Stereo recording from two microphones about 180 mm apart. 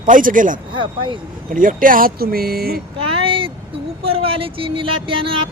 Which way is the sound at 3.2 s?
30° right (ahead or behind).